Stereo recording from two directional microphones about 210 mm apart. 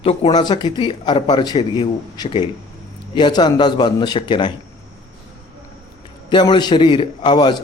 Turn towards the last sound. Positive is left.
turn(degrees=20)  # may be behind; listen again after turning